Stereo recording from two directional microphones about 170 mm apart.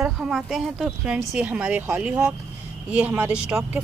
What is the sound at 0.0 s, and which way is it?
Speech, 5° right (ahead or behind).